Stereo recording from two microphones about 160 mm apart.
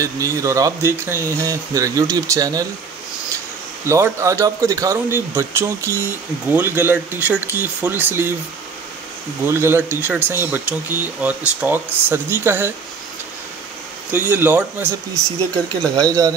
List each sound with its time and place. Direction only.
0.0 s speech: 20° right (ahead or behind)
3.8 s speech: 15° right (ahead or behind)
9.4 s speech: 15° right (ahead or behind)
14.1 s speech: 10° right (ahead or behind)
16.0 s speech: 25° right (ahead or behind)